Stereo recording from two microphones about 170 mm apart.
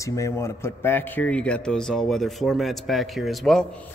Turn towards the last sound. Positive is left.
turn(degrees=5)  # may be behind; listen again after turning